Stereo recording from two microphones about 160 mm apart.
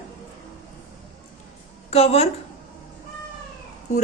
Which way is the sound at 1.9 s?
40° left (ahead or behind).